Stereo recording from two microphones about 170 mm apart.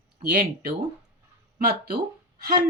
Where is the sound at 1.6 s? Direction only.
70° right (ahead or behind).